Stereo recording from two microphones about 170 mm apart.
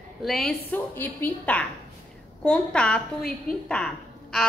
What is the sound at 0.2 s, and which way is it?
A woman's voice, centre (ahead or behind).